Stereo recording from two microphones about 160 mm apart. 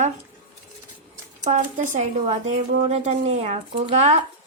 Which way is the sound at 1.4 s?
50° right (ahead or behind).